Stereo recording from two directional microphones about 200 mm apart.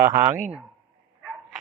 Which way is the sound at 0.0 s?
15° right (ahead or behind).